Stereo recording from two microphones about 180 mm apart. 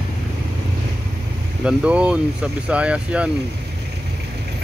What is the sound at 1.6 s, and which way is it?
Speech, 5° right (ahead or behind).